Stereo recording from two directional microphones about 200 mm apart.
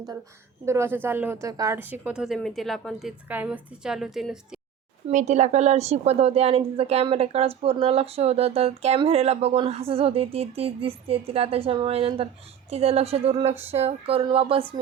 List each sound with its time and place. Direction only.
0.6 s a woman's voice: 15° right (ahead or behind)
5.0 s a woman's voice: 35° right (ahead or behind)